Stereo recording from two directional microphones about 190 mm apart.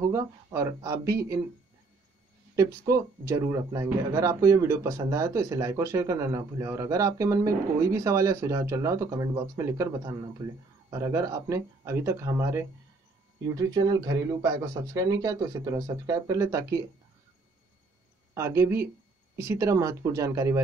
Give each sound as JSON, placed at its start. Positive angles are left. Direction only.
{"t": 0.1, "sound": "a man's voice", "side_deg": -15}
{"t": 2.5, "sound": "a man's voice", "side_deg": -15}
{"t": 18.3, "sound": "a man's voice", "side_deg": -15}